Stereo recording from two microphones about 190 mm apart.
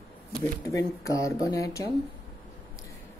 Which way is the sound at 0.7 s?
15° left (ahead or behind).